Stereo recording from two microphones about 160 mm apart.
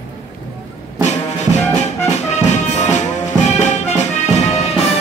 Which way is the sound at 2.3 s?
45° left (ahead or behind).